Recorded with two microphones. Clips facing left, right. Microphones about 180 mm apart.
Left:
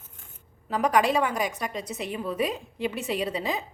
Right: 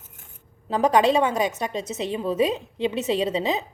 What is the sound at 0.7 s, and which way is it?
A woman's voice, 25° right (ahead or behind).